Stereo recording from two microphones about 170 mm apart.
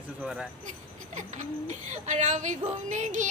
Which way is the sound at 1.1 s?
45° right (ahead or behind).